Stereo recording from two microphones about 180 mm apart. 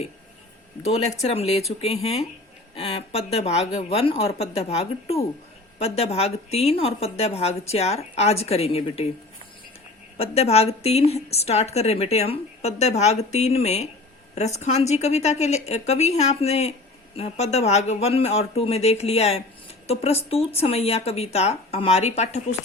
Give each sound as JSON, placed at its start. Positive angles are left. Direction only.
{"t": 1.2, "sound": "a woman's voice", "side_deg": 35}
{"t": 10.2, "sound": "a woman's voice", "side_deg": 35}